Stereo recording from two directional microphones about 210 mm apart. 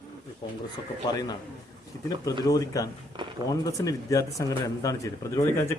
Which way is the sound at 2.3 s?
15° left (ahead or behind).